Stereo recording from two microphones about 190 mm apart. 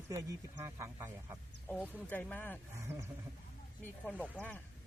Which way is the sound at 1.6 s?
10° left (ahead or behind).